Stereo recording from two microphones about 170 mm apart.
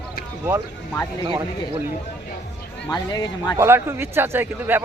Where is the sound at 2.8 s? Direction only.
25° left (ahead or behind).